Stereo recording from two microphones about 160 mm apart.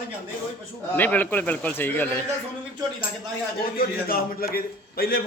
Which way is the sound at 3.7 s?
65° left (ahead or behind).